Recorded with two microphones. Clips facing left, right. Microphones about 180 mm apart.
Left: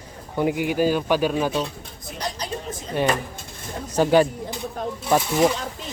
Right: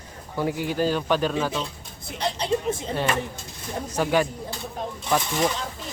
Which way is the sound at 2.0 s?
30° right (ahead or behind).